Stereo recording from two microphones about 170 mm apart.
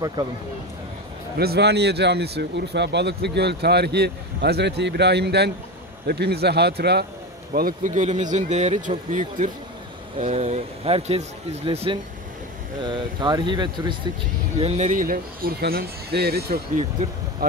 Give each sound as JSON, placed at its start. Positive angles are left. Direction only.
{"t": 1.4, "sound": "speech", "side_deg": -75}
{"t": 7.5, "sound": "speech", "side_deg": -55}
{"t": 14.6, "sound": "speech", "side_deg": -40}